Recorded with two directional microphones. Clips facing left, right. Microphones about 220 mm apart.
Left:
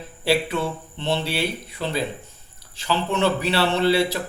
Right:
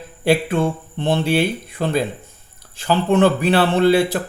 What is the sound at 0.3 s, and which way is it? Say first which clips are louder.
Speech: right 5 dB; 50° right (ahead or behind).